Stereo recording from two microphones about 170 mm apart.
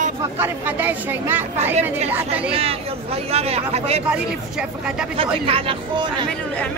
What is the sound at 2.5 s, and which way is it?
Speech, 35° right (ahead or behind).